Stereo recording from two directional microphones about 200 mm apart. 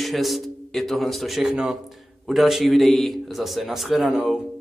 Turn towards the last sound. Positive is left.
turn(degrees=-5)  # may be behind; listen again after turning